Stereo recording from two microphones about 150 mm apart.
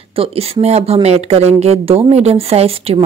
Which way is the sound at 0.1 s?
40° right (ahead or behind).